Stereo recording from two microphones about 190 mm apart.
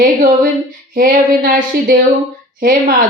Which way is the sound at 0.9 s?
50° right (ahead or behind).